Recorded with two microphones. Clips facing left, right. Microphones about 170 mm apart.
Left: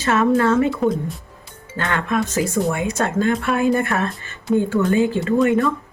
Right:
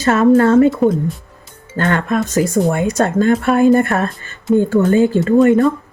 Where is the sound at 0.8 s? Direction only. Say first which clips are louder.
Right 5 dB; centre (ahead or behind).